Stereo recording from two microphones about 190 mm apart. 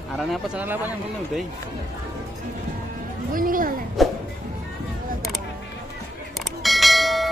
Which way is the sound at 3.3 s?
45° right (ahead or behind).